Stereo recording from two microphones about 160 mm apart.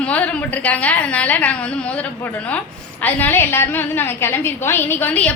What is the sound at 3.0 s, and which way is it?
A woman's voice, 10° left (ahead or behind).